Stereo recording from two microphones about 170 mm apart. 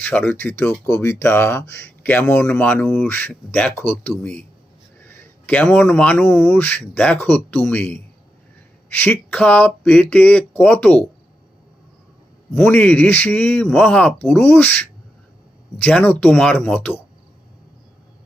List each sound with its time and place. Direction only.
0.0 s speech: 10° left (ahead or behind)
12.5 s speech: 10° left (ahead or behind)